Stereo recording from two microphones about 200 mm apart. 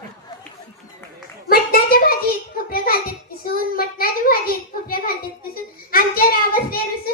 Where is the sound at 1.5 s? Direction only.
45° left (ahead or behind).